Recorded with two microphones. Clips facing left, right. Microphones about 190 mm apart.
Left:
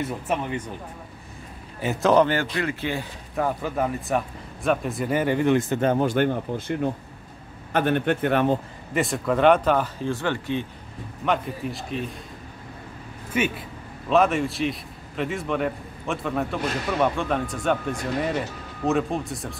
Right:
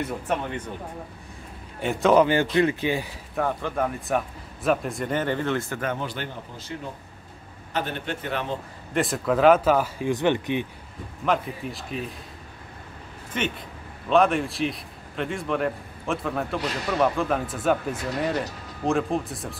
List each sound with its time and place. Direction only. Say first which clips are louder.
0.0 s speech: left 1 dB; 10° left (ahead or behind)
1.8 s speech: even; centre (ahead or behind)
2.5 s speech: right 5 dB; 20° right (ahead or behind)
3.3 s speech: left 1 dB; 5° left (ahead or behind)
5.9 s speech: left 9 dB; 45° left (ahead or behind)
8.9 s speech: even; centre (ahead or behind); by 10.7 s 15° right (ahead or behind)
11.2 s speech: even; centre (ahead or behind)
13.3 s a man's voice: left 4 dB; 5° left (ahead or behind)